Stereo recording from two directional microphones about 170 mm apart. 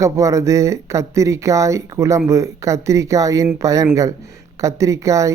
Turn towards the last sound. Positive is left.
turn(degrees=-20)  # may be behind; listen again after turning